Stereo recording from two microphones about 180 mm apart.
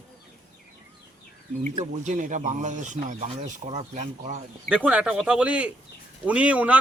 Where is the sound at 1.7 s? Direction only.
45° right (ahead or behind).